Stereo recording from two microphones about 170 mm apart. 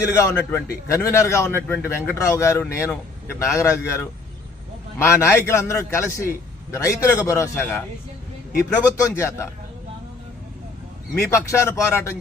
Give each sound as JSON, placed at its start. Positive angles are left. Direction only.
{"t": 0.2, "sound": "a man's voice", "side_deg": 15}
{"t": 9.0, "sound": "a man's voice", "side_deg": 20}
{"t": 11.3, "sound": "a man's voice", "side_deg": 15}